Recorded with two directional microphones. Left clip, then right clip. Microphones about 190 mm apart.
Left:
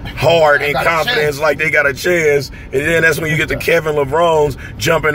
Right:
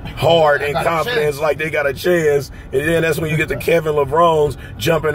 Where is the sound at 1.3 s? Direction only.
10° right (ahead or behind).